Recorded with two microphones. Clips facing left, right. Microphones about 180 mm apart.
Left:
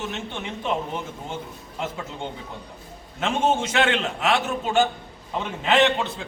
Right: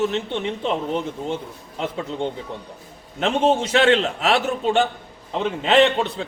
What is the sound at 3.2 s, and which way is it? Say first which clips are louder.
A man's voice: right 4 dB; 35° right (ahead or behind).